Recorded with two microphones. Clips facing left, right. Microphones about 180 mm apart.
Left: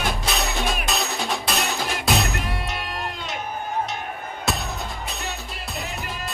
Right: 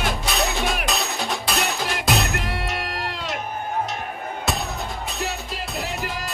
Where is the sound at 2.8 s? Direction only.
85° right.